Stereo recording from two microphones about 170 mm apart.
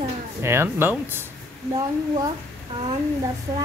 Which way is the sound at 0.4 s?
15° right (ahead or behind).